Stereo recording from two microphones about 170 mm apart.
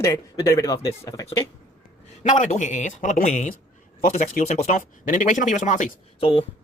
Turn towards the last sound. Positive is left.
turn(degrees=30)  # may be behind; listen again after turning